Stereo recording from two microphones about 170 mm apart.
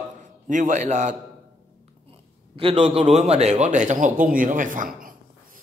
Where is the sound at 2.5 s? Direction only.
35° right (ahead or behind).